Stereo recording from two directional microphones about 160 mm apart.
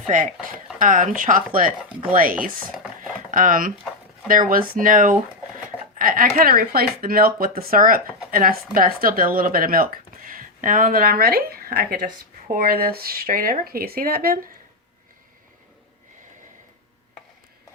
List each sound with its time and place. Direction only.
0.8 s speech: 55° right (ahead or behind)
3.3 s speech: 60° right (ahead or behind)